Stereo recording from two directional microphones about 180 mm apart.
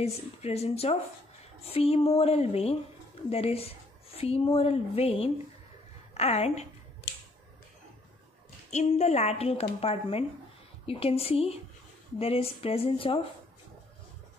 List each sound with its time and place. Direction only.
0.0 s speech: 35° left (ahead or behind)
8.6 s speech: 40° left (ahead or behind)